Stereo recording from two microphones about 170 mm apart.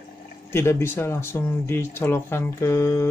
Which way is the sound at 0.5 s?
15° left (ahead or behind).